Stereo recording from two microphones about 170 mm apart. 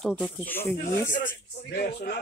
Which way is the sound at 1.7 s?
75° left (ahead or behind).